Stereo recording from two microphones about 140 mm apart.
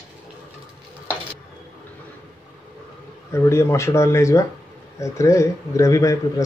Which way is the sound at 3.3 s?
20° left (ahead or behind).